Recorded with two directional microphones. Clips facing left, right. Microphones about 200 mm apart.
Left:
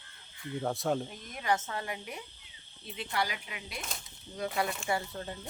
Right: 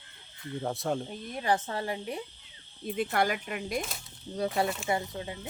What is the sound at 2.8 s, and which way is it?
Speech, 50° right (ahead or behind).